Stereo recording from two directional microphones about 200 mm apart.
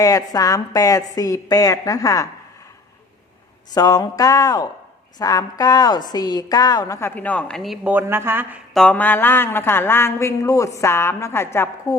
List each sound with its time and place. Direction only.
0.0 s a woman's voice: 15° left (ahead or behind)
3.8 s a sound: 20° left (ahead or behind)
4.2 s a woman's voice: 15° left (ahead or behind); by 8.5 s 10° right (ahead or behind)
8.7 s a woman's voice: 5° left (ahead or behind)